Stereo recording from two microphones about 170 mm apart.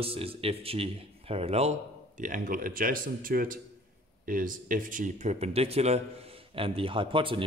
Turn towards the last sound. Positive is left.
turn(degrees=-30)  # may be behind; listen again after turning